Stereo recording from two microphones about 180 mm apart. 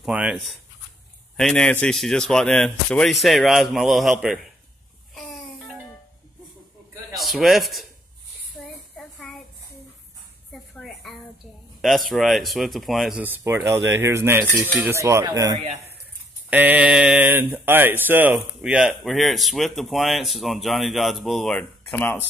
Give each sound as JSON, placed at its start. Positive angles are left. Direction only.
{"t": 0.0, "sound": "speech", "side_deg": -5}
{"t": 7.2, "sound": "a man's voice", "side_deg": 0}
{"t": 8.6, "sound": "a sound", "side_deg": 10}
{"t": 10.5, "sound": "a sound", "side_deg": 0}
{"t": 11.8, "sound": "speech", "side_deg": 0}
{"t": 16.4, "sound": "speech", "side_deg": -10}